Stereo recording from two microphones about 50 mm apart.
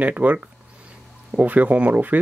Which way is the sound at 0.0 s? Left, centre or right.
Right.